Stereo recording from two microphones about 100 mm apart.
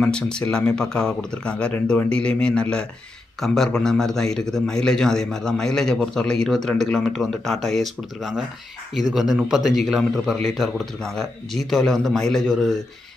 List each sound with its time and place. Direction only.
0.0 s a man's voice: 10° left (ahead or behind)